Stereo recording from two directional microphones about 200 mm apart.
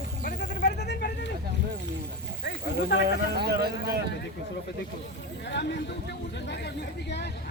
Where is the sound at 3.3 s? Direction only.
55° right (ahead or behind).